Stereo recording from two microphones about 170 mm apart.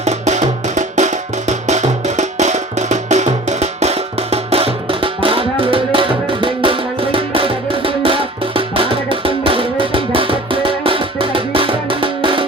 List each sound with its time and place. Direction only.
0.0 s music: 40° right (ahead or behind)